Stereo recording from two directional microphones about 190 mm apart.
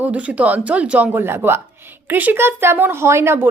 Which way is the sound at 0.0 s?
5° right (ahead or behind).